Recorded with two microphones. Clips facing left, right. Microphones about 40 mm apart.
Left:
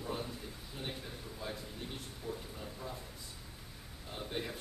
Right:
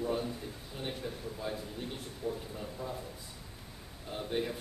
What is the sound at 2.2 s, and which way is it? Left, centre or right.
Speech, right.